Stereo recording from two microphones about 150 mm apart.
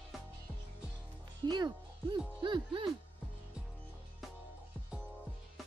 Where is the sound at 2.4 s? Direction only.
35° right (ahead or behind).